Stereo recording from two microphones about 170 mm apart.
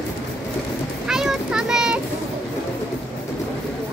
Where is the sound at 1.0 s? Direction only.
5° right (ahead or behind).